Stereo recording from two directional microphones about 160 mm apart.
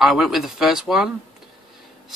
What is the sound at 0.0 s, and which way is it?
Speech, centre (ahead or behind).